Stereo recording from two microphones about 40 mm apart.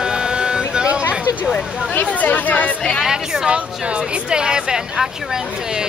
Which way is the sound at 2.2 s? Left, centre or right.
Left.